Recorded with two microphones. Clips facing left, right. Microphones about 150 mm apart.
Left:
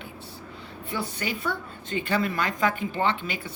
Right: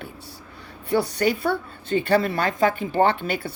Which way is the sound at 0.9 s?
50° right (ahead or behind).